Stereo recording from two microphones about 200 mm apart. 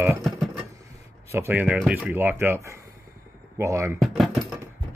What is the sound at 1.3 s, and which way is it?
Speech, 10° right (ahead or behind).